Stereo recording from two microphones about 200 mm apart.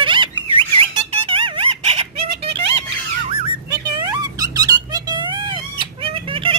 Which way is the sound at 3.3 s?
20° right (ahead or behind).